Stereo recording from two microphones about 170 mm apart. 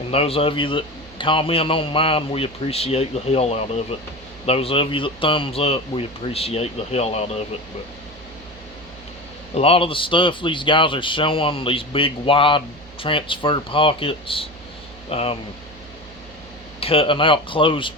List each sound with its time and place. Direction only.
0.1 s speech: 35° left (ahead or behind)
9.6 s speech: 35° left (ahead or behind)
16.8 s speech: 35° left (ahead or behind)